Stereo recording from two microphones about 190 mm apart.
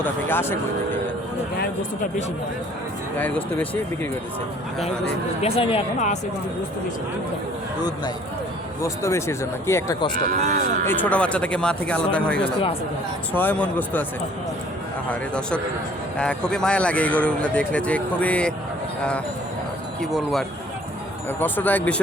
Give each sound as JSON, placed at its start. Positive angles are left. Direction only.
{"t": 0.0, "sound": "speech", "side_deg": 10}
{"t": 3.2, "sound": "speech", "side_deg": 10}
{"t": 5.4, "sound": "speech", "side_deg": 30}
{"t": 7.8, "sound": "a man's voice", "side_deg": 20}
{"t": 10.4, "sound": "speech", "side_deg": -40}
{"t": 10.8, "sound": "speech", "side_deg": 10}
{"t": 15.1, "sound": "speech", "side_deg": 5}
{"t": 20.0, "sound": "speech", "side_deg": 0}